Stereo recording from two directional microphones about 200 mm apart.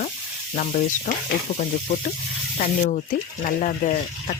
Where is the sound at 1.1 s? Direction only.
40° left (ahead or behind).